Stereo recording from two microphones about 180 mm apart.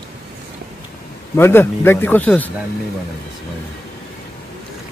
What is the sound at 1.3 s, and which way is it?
A man's voice, 15° left (ahead or behind).